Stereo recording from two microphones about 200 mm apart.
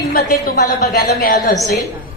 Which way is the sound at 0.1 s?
55° left (ahead or behind).